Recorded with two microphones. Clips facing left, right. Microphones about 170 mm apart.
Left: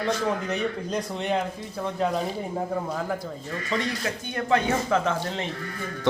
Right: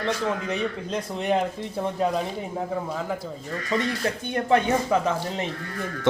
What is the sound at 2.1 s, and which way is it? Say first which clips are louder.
A man's voice: even; 5° left (ahead or behind).